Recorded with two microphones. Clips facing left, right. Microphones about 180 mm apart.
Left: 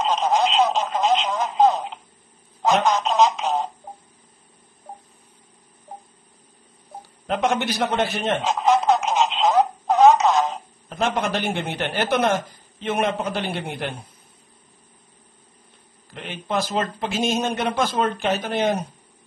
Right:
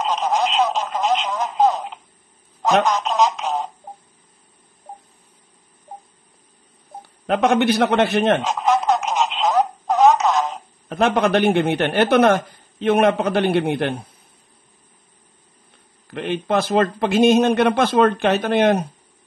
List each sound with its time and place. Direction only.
0.3 s radio: centre (ahead or behind)
2.8 s radio: centre (ahead or behind)
7.0 s speech: 60° right (ahead or behind)
8.5 s radio: centre (ahead or behind)
9.8 s a sound: centre (ahead or behind)
10.9 s a man's voice: 60° right (ahead or behind)
16.1 s a man's voice: 65° right (ahead or behind)